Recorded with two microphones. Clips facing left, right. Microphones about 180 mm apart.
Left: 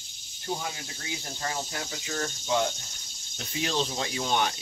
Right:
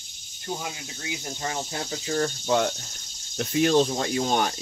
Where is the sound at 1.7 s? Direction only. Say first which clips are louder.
Right 6 dB; 35° right (ahead or behind).